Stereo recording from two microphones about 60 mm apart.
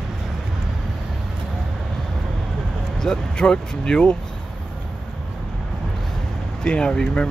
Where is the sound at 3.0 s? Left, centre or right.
Centre.